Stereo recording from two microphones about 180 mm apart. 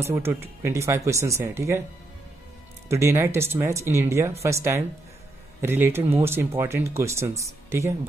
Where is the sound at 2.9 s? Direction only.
15° right (ahead or behind).